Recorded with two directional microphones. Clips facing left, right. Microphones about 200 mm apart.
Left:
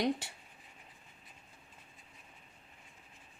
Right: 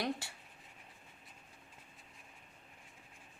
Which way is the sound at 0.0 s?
20° left (ahead or behind).